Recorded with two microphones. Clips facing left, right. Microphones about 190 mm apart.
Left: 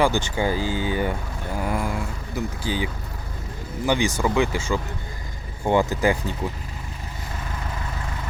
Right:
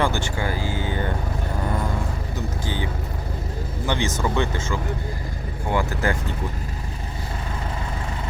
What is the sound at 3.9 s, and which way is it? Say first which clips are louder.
Speech: left 3 dB; 10° left (ahead or behind).